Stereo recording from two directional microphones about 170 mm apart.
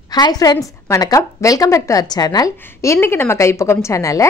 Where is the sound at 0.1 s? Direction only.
25° left (ahead or behind).